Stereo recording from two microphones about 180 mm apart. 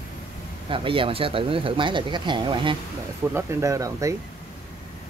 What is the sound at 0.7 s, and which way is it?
Speech, 30° right (ahead or behind).